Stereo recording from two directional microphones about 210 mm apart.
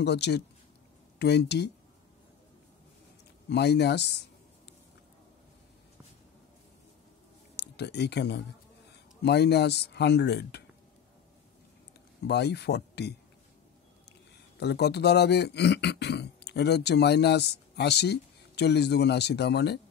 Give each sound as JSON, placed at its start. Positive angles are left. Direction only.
{"t": 0.0, "sound": "speech", "side_deg": 55}
{"t": 3.4, "sound": "speech", "side_deg": 55}
{"t": 7.5, "sound": "speech", "side_deg": 55}
{"t": 12.3, "sound": "speech", "side_deg": 50}
{"t": 14.6, "sound": "speech", "side_deg": 55}